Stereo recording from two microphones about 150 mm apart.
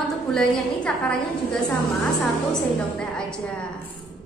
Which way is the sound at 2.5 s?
5° left (ahead or behind).